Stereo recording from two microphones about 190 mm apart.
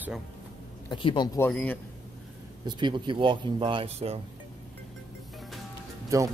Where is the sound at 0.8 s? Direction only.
25° left (ahead or behind).